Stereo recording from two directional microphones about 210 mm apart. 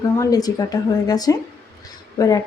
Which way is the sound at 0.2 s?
15° left (ahead or behind).